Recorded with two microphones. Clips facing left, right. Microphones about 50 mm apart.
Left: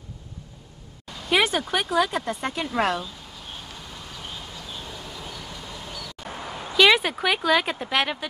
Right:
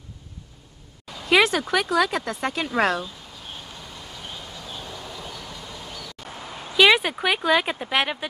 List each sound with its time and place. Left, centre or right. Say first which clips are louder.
1.3 s speech: right 3 dB; right
4.7 s vehicle: right 2 dB; centre
6.8 s speech: right 1 dB; centre